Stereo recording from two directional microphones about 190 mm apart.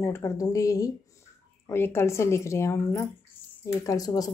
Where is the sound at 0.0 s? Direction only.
15° left (ahead or behind).